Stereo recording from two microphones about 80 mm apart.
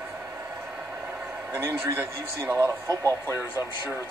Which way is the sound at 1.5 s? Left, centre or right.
Right.